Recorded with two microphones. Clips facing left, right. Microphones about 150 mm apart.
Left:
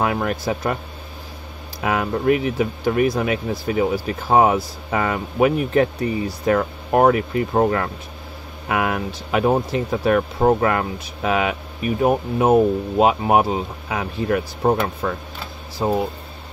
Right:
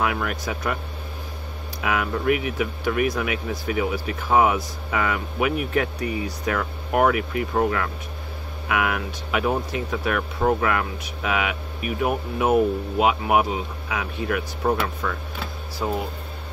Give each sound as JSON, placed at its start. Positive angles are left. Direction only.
{"t": 0.0, "sound": "speech", "side_deg": 35}
{"t": 1.8, "sound": "speech", "side_deg": 35}